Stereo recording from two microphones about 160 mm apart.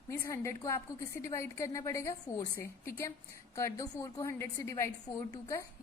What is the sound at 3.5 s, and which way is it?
A woman's voice, 20° left (ahead or behind).